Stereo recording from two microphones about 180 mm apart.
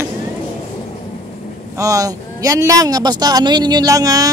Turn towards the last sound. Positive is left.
turn(degrees=-20)  # may be behind; listen again after turning